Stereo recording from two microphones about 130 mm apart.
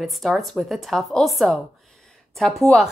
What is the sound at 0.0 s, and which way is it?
Speech, centre (ahead or behind).